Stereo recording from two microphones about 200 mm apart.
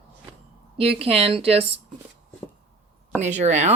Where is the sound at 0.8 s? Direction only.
30° right (ahead or behind).